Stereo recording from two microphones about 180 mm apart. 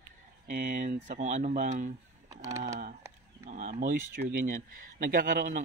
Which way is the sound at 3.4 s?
45° right (ahead or behind).